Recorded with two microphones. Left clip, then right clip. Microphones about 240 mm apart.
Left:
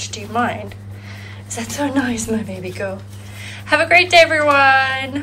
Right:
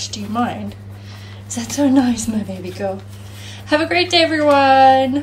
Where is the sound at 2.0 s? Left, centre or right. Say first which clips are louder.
Even; centre.